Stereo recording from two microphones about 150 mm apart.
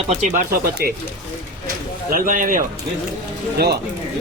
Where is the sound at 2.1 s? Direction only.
65° right (ahead or behind).